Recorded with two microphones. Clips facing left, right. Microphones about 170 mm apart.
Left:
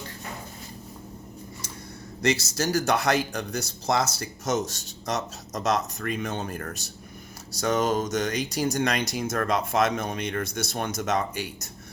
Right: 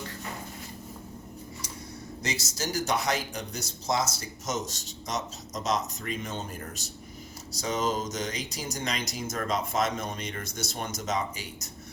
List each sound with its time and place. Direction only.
2.2 s speech: 65° left (ahead or behind)